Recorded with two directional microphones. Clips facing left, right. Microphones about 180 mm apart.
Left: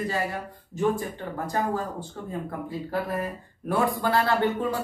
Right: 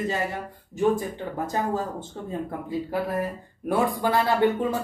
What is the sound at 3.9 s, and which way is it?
Speech, 15° right (ahead or behind).